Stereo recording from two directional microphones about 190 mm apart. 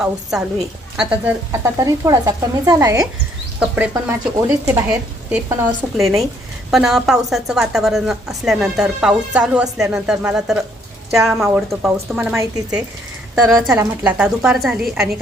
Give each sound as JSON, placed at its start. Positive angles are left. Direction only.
{"t": 0.0, "sound": "a woman's voice", "side_deg": -5}
{"t": 6.7, "sound": "a woman's voice", "side_deg": 0}
{"t": 13.3, "sound": "a woman's voice", "side_deg": 0}